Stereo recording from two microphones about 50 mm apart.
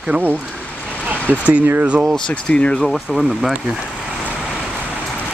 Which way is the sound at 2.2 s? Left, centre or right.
Centre.